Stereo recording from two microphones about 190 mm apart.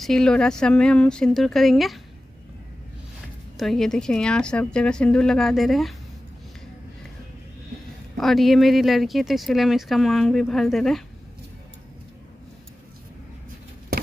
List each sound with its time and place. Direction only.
0.0 s speech: centre (ahead or behind)
3.5 s speech: centre (ahead or behind)
8.2 s speech: centre (ahead or behind)